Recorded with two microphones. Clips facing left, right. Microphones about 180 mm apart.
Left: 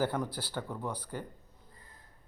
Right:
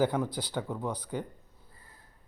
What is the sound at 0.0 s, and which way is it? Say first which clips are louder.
Speech: right 4 dB; 15° right (ahead or behind).